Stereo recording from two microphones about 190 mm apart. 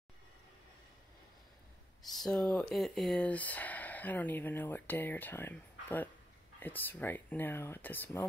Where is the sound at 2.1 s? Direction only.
5° left (ahead or behind).